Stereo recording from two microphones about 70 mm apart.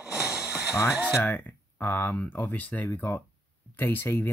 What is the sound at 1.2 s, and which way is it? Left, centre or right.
Speech, left.